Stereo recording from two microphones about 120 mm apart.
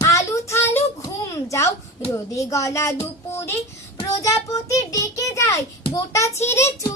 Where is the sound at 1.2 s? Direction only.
25° left (ahead or behind).